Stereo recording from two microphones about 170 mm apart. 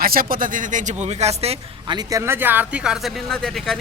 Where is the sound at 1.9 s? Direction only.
15° right (ahead or behind); by 3.7 s 5° left (ahead or behind).